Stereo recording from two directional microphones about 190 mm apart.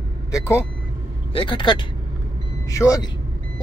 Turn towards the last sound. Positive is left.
turn(degrees=15)  # may be behind; listen again after turning